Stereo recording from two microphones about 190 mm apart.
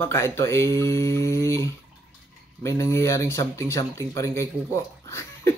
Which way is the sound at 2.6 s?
15° left (ahead or behind).